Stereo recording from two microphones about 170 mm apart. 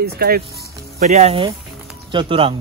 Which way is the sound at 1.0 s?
40° right (ahead or behind).